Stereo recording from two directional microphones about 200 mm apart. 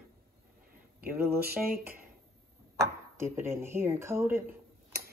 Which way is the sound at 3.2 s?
10° right (ahead or behind).